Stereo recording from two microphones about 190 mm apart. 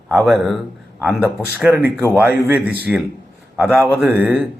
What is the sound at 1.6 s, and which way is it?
A man's voice, 5° right (ahead or behind).